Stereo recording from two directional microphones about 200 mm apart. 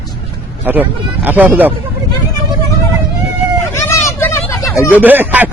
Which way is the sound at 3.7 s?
15° left (ahead or behind).